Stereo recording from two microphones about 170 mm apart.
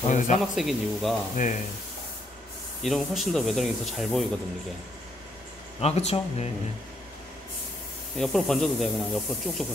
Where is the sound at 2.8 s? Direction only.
Centre (ahead or behind).